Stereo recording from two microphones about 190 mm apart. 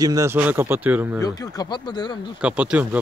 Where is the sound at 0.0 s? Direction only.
15° right (ahead or behind).